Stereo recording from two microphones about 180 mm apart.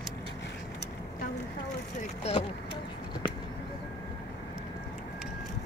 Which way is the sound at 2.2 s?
30° left (ahead or behind).